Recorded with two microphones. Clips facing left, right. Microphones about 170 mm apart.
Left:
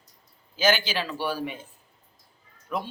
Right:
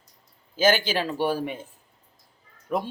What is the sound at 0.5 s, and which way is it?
Speech, 45° right (ahead or behind).